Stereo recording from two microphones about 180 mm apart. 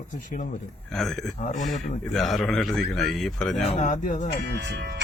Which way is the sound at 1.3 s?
45° left (ahead or behind).